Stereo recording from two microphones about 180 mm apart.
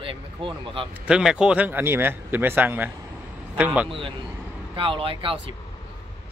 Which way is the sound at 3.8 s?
30° right (ahead or behind).